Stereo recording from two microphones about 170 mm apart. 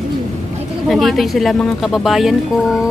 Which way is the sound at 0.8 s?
Centre (ahead or behind).